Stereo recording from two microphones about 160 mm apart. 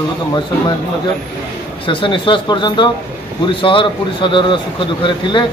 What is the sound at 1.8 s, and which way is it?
A man's voice, 30° left (ahead or behind).